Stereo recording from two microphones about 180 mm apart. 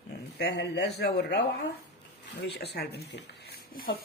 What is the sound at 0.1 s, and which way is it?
Speech, 65° left (ahead or behind).